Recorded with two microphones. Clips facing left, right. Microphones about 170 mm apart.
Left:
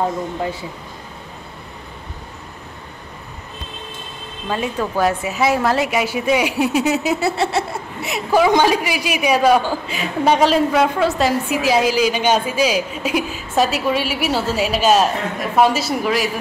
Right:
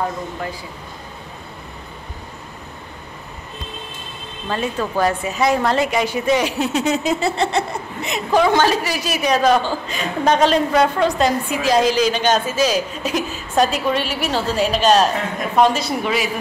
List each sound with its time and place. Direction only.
0.4 s speech: 25° left (ahead or behind)
4.5 s a woman's voice: 10° left (ahead or behind)